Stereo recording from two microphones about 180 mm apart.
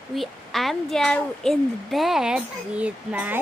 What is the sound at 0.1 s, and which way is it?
A child's voice, centre (ahead or behind).